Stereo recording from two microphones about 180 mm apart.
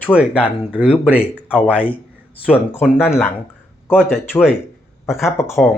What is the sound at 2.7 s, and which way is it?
Speech, 10° left (ahead or behind).